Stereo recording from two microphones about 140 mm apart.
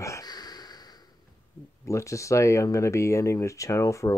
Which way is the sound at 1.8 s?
20° left (ahead or behind).